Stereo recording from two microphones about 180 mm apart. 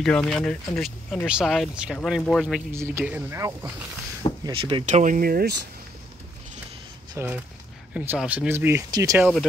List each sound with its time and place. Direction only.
0.0 s speech: 5° left (ahead or behind)
2.7 s speech: 15° right (ahead or behind)
4.4 s speech: 25° right (ahead or behind)
4.8 s speech: 45° right (ahead or behind); by 5.6 s 60° right (ahead or behind)
7.2 s speech: 15° right (ahead or behind)